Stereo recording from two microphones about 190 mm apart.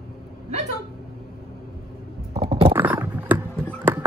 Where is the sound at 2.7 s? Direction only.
10° right (ahead or behind).